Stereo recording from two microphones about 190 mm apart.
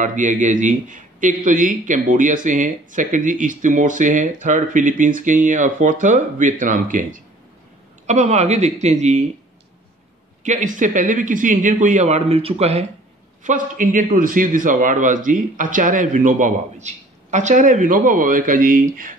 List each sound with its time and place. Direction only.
0.0 s a man's voice: 40° right (ahead or behind)
10.4 s a man's voice: 40° right (ahead or behind)
13.4 s a man's voice: 45° right (ahead or behind)